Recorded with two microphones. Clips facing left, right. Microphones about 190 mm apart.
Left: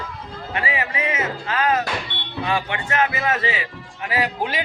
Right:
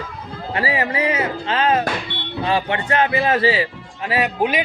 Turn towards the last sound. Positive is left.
turn(degrees=-20)  # may be behind; listen again after turning